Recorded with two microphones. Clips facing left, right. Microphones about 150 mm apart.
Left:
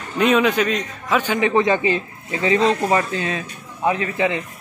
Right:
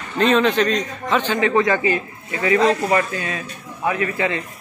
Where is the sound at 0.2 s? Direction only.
10° left (ahead or behind).